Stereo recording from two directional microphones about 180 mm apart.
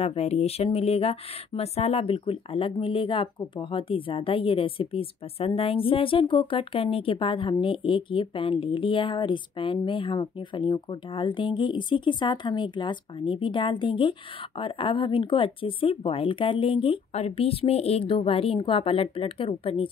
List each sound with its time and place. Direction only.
0.0 s speech: 35° left (ahead or behind)